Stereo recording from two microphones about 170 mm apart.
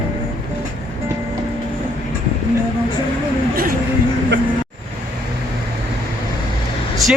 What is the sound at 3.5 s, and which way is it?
Vehicle, 60° right (ahead or behind).